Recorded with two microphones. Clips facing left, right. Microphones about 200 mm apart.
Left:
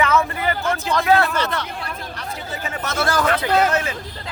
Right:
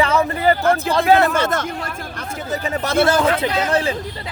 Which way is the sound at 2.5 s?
35° right (ahead or behind).